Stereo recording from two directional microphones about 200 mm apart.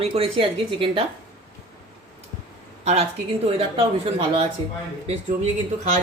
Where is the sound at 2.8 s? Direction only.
30° right (ahead or behind).